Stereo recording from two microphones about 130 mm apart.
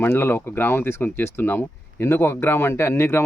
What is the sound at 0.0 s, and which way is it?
Speech, 15° left (ahead or behind).